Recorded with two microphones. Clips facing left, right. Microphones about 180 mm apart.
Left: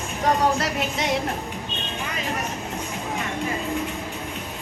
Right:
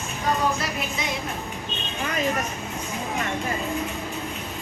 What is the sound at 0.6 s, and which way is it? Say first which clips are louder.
Music: left 4 dB; 80° left.